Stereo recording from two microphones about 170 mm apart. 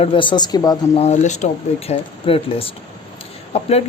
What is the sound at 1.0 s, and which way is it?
Speech, 40° left (ahead or behind).